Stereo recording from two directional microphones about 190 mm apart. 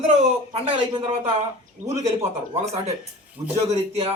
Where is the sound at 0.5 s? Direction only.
30° right (ahead or behind).